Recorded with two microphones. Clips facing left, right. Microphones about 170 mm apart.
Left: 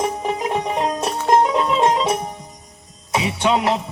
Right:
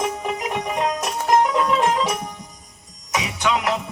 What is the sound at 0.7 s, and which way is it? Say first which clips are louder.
Music: left 2 dB; 30° left (ahead or behind).